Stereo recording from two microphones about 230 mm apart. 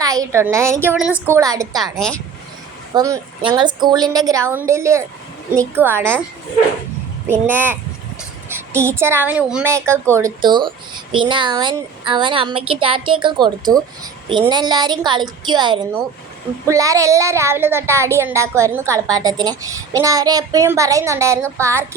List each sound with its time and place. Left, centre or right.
0.0 s speech: centre
1.8 s a woman's voice: centre
2.9 s speech: centre
7.3 s a woman's voice: centre